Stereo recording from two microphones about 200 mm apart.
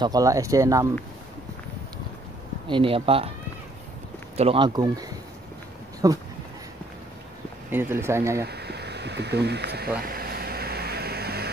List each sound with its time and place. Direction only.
0.0 s speech: 15° right (ahead or behind)
2.7 s speech: 25° right (ahead or behind)
4.4 s speech: 25° right (ahead or behind)
6.0 s speech: 15° right (ahead or behind)
7.7 s speech: 10° right (ahead or behind)
8.5 s a sound: 55° right (ahead or behind)